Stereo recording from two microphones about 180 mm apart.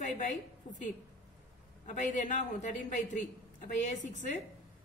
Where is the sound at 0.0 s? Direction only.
45° left (ahead or behind).